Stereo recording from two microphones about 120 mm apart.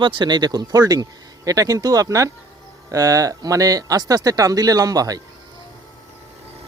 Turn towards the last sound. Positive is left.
turn(degrees=-30)  # may be behind; listen again after turning